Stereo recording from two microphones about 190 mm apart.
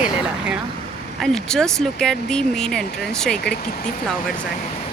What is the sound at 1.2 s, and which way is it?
Speech, 5° left (ahead or behind).